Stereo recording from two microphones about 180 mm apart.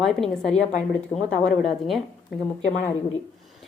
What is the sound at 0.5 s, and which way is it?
Speech, 40° left (ahead or behind).